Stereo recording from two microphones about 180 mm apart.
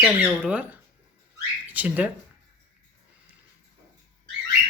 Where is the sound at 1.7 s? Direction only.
10° right (ahead or behind).